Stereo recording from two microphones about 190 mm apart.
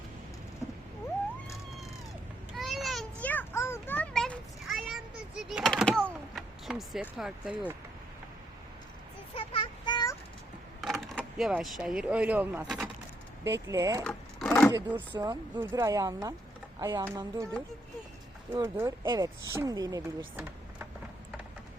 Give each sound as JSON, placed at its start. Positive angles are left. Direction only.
{"t": 2.6, "sound": "a sound", "side_deg": 0}
{"t": 9.3, "sound": "child singing", "side_deg": 30}
{"t": 11.0, "sound": "speech", "side_deg": 0}
{"t": 13.4, "sound": "speech", "side_deg": -15}
{"t": 14.0, "sound": "a sound", "side_deg": 5}
{"t": 14.7, "sound": "speech", "side_deg": -20}
{"t": 14.9, "sound": "speech", "side_deg": -10}
{"t": 18.5, "sound": "speech", "side_deg": -15}
{"t": 20.3, "sound": "a sound", "side_deg": -5}